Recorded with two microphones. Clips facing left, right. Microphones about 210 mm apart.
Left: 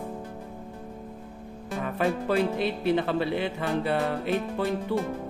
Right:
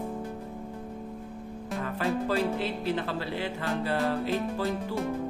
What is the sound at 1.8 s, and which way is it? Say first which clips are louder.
Speech: left 3 dB; 20° left (ahead or behind).